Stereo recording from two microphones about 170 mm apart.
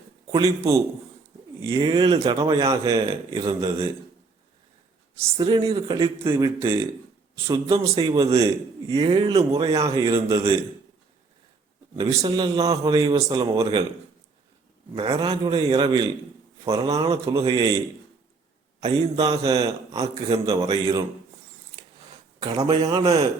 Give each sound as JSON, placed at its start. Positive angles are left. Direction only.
{"t": 0.3, "sound": "a man's voice", "side_deg": -20}
{"t": 5.4, "sound": "a man's voice", "side_deg": -25}
{"t": 6.2, "sound": "a man's voice", "side_deg": -15}
{"t": 9.8, "sound": "a man's voice", "side_deg": -20}
{"t": 11.9, "sound": "a man's voice", "side_deg": -20}
{"t": 14.9, "sound": "a man's voice", "side_deg": -25}
{"t": 18.8, "sound": "a man's voice", "side_deg": -25}
{"t": 22.4, "sound": "speech", "side_deg": -35}
{"t": 22.8, "sound": "a man's voice", "side_deg": -20}